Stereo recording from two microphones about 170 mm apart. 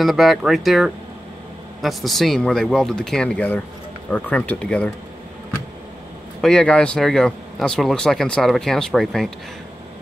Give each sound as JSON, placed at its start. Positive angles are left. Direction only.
{"t": 0.0, "sound": "speech", "side_deg": 0}
{"t": 6.4, "sound": "speech", "side_deg": 5}